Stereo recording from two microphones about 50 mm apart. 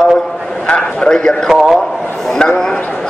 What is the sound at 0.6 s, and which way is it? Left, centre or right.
Speech, left.